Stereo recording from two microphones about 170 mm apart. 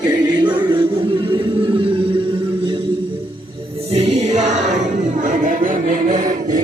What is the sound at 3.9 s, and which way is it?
Music, 35° right (ahead or behind).